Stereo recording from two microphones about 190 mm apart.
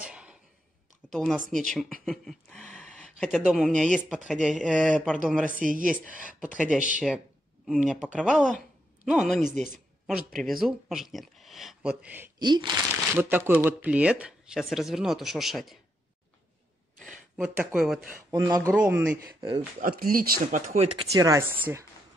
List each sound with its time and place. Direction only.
0.0 s a sound: 5° right (ahead or behind)
1.1 s speech: centre (ahead or behind)
4.7 s speech: 5° left (ahead or behind)
5.4 s speech: 45° right (ahead or behind)
6.2 s speech: 5° right (ahead or behind)
8.5 s a sound: 5° right (ahead or behind)
10.0 s speech: centre (ahead or behind)
12.4 s speech: 25° right (ahead or behind)
13.1 s speech: 10° right (ahead or behind)
17.4 s speech: 10° right (ahead or behind)
18.3 s speech: 20° right (ahead or behind)
18.7 s speech: 10° right (ahead or behind)
19.8 s speech: 50° right (ahead or behind)
21.1 s speech: 15° right (ahead or behind)